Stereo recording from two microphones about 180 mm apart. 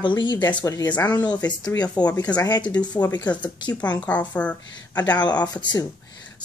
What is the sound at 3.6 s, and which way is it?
Speech, 5° left (ahead or behind).